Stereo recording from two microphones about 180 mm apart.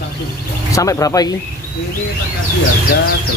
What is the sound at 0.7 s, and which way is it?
Speech, 20° left (ahead or behind).